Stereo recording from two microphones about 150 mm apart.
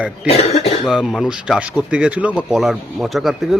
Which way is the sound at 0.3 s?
45° left (ahead or behind).